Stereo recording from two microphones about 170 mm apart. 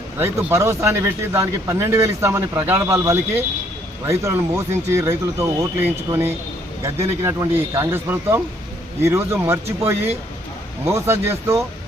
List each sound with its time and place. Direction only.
0.2 s speech: 15° right (ahead or behind)